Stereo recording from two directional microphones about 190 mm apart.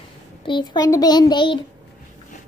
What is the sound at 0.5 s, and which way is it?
A child's voice, 20° left (ahead or behind).